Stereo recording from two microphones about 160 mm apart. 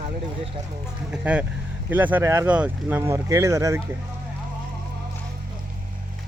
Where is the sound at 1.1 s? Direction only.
10° right (ahead or behind).